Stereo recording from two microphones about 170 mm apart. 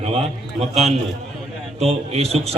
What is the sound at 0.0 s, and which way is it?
Speech, 35° right (ahead or behind).